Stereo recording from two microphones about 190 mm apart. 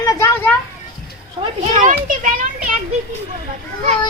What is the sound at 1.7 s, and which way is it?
Speech, 40° right (ahead or behind).